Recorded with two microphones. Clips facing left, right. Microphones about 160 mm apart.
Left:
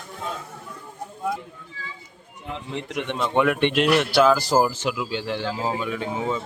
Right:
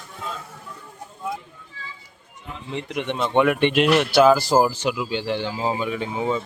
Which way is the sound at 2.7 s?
Centre (ahead or behind).